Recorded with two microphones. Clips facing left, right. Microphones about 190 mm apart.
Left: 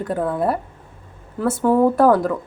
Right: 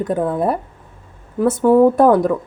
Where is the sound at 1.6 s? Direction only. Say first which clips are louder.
Right 3 dB; 15° right (ahead or behind).